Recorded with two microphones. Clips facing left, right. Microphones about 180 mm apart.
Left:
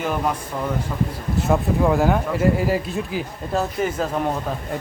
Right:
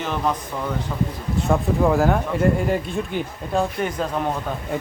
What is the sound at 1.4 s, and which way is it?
Speech, centre (ahead or behind).